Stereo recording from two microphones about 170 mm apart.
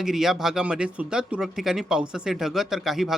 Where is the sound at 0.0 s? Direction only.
5° right (ahead or behind).